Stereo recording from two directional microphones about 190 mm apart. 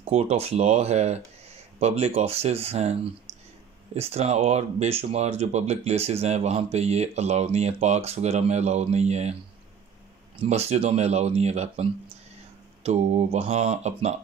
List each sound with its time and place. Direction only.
0.0 s speech: 30° right (ahead or behind)
10.3 s speech: 30° right (ahead or behind)